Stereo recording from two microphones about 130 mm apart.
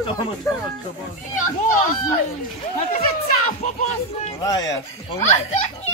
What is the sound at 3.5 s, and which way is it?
Speech, 75° left (ahead or behind).